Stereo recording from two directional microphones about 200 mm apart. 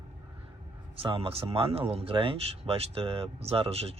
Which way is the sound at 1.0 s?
30° right (ahead or behind).